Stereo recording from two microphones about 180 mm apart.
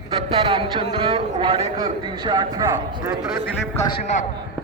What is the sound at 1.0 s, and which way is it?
A man's voice, 30° right (ahead or behind).